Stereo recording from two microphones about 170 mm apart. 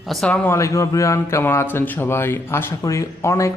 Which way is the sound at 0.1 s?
5° left (ahead or behind).